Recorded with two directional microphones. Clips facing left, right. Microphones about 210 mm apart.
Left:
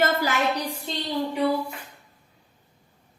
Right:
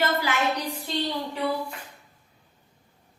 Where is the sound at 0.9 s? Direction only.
25° left (ahead or behind).